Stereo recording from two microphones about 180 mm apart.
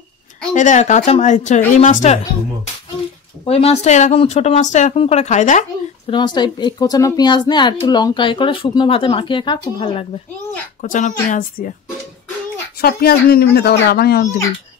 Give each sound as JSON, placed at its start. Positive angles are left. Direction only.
{"t": 0.6, "sound": "a woman's voice", "side_deg": 40}
{"t": 3.4, "sound": "speech", "side_deg": 35}
{"t": 6.0, "sound": "a woman's voice", "side_deg": 25}
{"t": 10.8, "sound": "a woman's voice", "side_deg": 45}
{"t": 12.8, "sound": "speech", "side_deg": 60}